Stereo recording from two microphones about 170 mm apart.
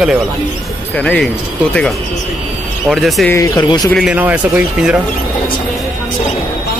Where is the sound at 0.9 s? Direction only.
5° left (ahead or behind).